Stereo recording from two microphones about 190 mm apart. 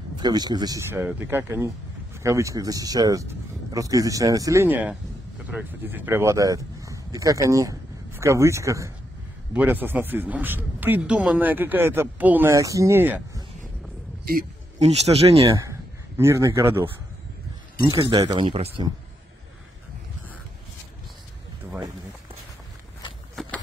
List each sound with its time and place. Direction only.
0.2 s speech: 20° right (ahead or behind)
14.8 s speech: 35° right (ahead or behind)
15.4 s a man's voice: 15° right (ahead or behind)
17.9 s speech: 25° right (ahead or behind)